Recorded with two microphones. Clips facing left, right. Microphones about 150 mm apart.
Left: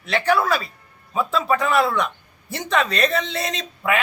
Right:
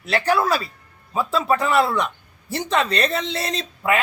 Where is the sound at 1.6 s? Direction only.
Centre (ahead or behind).